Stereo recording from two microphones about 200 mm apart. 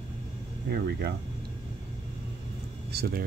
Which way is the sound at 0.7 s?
50° right (ahead or behind).